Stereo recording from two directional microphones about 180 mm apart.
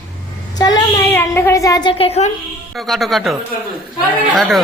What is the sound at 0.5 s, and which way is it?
A woman's voice, 20° left (ahead or behind).